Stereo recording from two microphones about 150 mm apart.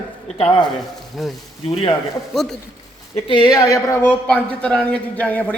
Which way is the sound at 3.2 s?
30° left (ahead or behind).